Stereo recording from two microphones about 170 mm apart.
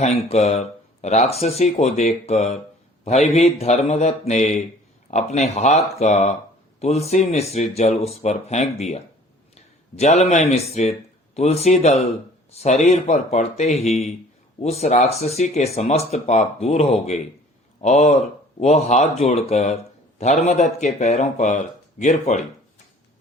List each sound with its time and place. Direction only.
0.0 s a man's voice: 40° left (ahead or behind)